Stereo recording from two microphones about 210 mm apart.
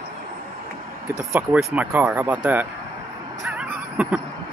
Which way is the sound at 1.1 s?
10° right (ahead or behind).